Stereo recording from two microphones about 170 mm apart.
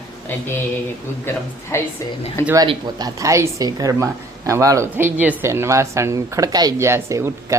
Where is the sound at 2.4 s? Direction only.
20° right (ahead or behind).